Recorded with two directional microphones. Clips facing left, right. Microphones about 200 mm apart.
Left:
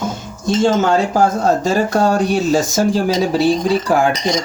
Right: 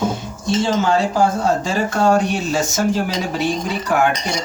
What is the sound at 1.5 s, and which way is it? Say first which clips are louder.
Speech: left 4 dB; 40° left (ahead or behind).